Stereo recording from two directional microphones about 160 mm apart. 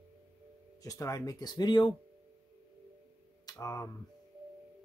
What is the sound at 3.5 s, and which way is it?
Speech, 20° left (ahead or behind).